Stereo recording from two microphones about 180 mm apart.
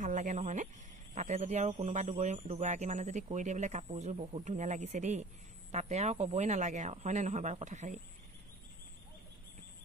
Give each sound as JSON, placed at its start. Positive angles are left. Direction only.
{"t": 0.0, "sound": "speech", "side_deg": -45}